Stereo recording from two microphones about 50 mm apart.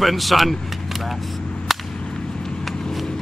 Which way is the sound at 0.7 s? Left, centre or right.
Centre.